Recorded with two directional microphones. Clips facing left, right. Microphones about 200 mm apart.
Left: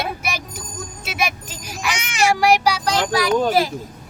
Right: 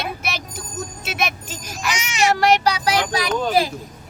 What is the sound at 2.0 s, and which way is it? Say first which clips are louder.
Speech: even; 55° left (ahead or behind).